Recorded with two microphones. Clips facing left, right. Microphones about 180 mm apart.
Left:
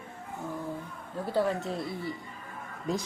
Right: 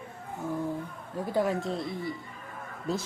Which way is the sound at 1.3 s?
10° right (ahead or behind).